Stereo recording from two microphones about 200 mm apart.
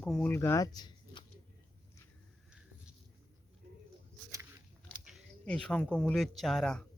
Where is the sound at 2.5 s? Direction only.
5° right (ahead or behind).